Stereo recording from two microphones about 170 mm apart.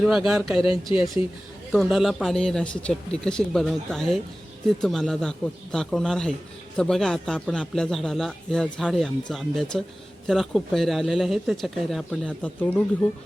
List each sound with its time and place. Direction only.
0.3 s speech: 5° right (ahead or behind)
0.6 s speech: 30° left (ahead or behind)
1.7 s speech: centre (ahead or behind)